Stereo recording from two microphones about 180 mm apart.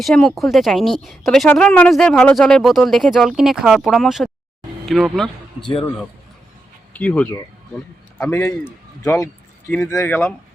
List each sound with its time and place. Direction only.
0.0 s a woman's voice: centre (ahead or behind)
5.5 s speech: 30° left (ahead or behind)
6.9 s speech: 5° left (ahead or behind)